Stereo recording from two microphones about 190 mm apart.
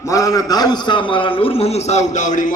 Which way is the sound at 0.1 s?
15° left (ahead or behind).